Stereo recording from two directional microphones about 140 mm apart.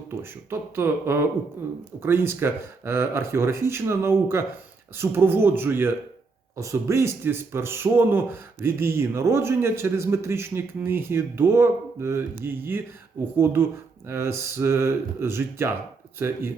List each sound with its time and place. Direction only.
0.1 s speech: 15° right (ahead or behind)